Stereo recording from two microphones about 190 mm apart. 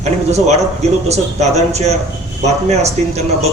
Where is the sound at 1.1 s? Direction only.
35° right (ahead or behind).